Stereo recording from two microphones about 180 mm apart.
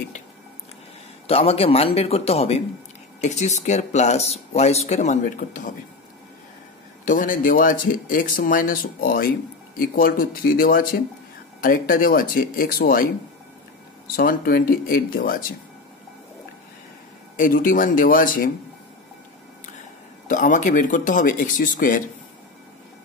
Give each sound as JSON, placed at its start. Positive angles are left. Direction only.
{"t": 1.2, "sound": "speech", "side_deg": 35}
{"t": 7.1, "sound": "speech", "side_deg": 50}
{"t": 14.1, "sound": "speech", "side_deg": 55}
{"t": 17.4, "sound": "speech", "side_deg": 50}
{"t": 20.2, "sound": "speech", "side_deg": 45}